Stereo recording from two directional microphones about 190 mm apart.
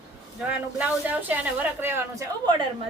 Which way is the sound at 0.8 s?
10° right (ahead or behind).